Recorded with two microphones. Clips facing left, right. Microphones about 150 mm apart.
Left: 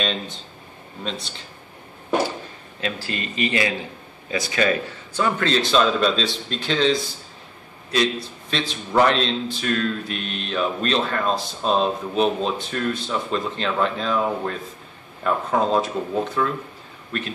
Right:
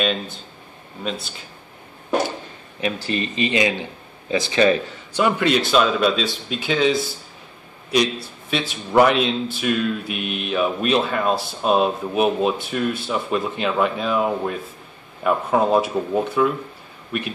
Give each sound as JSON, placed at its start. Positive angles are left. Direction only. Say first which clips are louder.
{"t": 0.0, "sound": "speech", "louder": "right 3 dB", "side_deg": -5}
{"t": 2.8, "sound": "a man's voice", "louder": "right 4 dB", "side_deg": -20}